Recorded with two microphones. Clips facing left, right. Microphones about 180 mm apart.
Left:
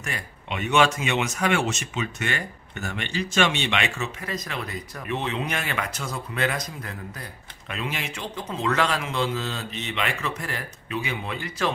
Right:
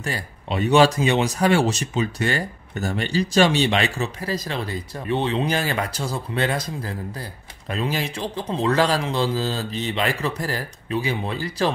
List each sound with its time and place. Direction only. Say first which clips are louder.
0.0 s speech: right 5 dB; 35° right (ahead or behind)